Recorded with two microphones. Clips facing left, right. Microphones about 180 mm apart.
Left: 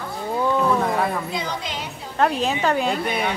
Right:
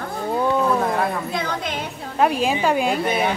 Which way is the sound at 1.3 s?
55° right (ahead or behind).